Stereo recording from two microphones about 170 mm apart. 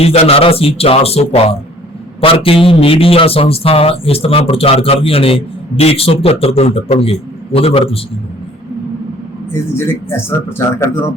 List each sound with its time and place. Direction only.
0.0 s a man's voice: 35° left (ahead or behind)
9.5 s speech: 15° left (ahead or behind)